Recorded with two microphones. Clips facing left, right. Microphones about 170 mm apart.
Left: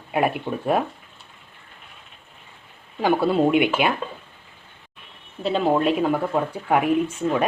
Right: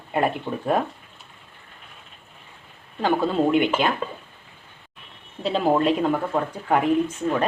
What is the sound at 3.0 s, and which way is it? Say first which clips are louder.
Speech: left 2 dB; 10° left (ahead or behind).